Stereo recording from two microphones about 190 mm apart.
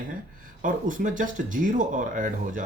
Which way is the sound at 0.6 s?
45° right (ahead or behind).